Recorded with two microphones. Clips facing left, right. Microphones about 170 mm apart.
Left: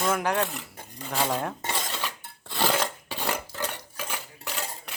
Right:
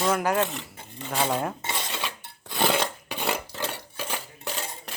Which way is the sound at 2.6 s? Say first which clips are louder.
Right 2 dB; 20° right (ahead or behind).